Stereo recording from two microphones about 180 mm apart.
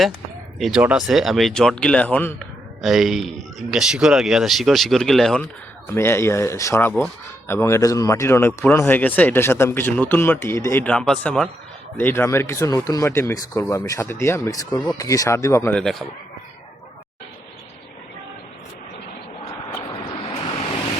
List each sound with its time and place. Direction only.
0.6 s speech: 5° right (ahead or behind); by 15.8 s 15° left (ahead or behind)
15.8 s speech: centre (ahead or behind)
19.9 s waves: 25° left (ahead or behind)